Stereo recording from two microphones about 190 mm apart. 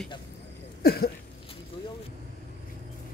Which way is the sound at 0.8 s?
55° left (ahead or behind).